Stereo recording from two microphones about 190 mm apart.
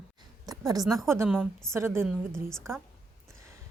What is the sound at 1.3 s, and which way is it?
Speech, 5° left (ahead or behind).